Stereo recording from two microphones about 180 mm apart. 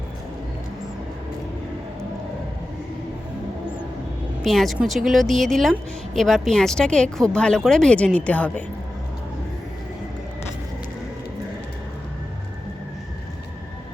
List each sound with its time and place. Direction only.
4.4 s speech: centre (ahead or behind)